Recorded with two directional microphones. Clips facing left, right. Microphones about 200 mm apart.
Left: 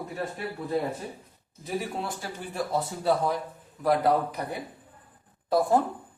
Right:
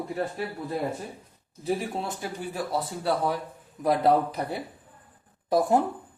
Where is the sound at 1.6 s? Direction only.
30° right (ahead or behind).